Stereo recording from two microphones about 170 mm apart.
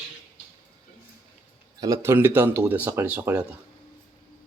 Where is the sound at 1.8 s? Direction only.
15° right (ahead or behind).